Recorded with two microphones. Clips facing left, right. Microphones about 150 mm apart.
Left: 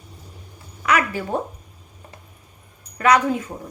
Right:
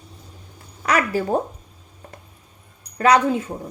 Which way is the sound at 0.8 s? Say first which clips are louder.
Right 1 dB; 35° right (ahead or behind).